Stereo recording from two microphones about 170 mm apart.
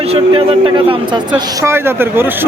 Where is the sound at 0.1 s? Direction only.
30° right (ahead or behind).